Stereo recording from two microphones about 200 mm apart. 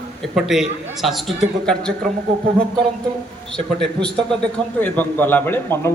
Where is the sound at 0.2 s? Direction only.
Centre (ahead or behind).